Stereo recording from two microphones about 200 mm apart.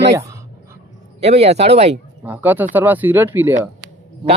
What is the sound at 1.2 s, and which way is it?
Speech, 30° right (ahead or behind).